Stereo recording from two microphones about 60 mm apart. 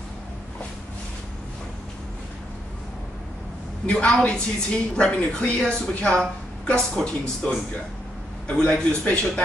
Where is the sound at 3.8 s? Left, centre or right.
Centre.